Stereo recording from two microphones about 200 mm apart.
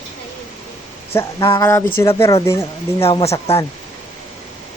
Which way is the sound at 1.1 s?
15° left (ahead or behind).